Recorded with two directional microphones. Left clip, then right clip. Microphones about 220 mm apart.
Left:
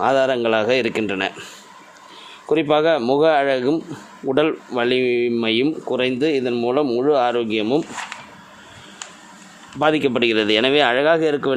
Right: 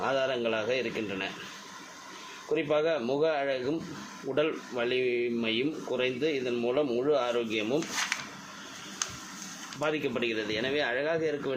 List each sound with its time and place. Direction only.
0.0 s speech: 45° left (ahead or behind)
2.5 s speech: 45° left (ahead or behind)
9.8 s speech: 45° left (ahead or behind)